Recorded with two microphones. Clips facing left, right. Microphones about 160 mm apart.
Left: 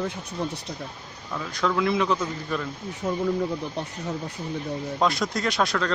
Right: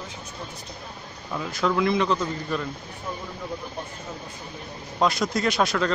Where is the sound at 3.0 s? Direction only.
65° left (ahead or behind).